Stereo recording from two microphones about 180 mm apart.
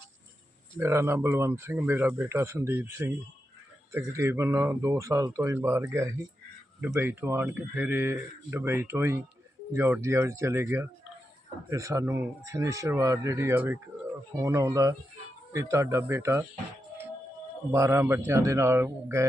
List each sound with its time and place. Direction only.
0.8 s speech: 15° right (ahead or behind)
17.7 s speech: 15° right (ahead or behind)